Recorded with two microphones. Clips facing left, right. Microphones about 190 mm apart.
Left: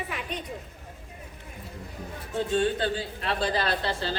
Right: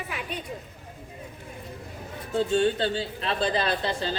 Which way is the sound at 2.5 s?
25° right (ahead or behind).